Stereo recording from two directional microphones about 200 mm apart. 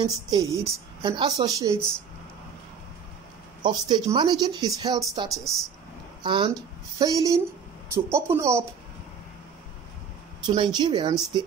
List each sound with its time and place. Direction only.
0.0 s speech: 20° right (ahead or behind)
3.6 s speech: 20° right (ahead or behind)
5.3 s a woman's voice: centre (ahead or behind)
6.2 s speech: 25° right (ahead or behind)
10.4 s speech: 20° right (ahead or behind)